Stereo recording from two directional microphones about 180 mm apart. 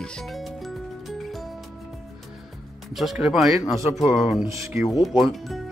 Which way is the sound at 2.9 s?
Centre (ahead or behind).